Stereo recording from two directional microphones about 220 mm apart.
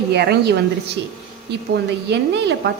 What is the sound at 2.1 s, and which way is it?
Speech, 50° right (ahead or behind).